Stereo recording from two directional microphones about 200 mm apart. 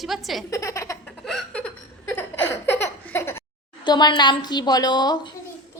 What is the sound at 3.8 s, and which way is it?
A woman's voice, 20° left (ahead or behind).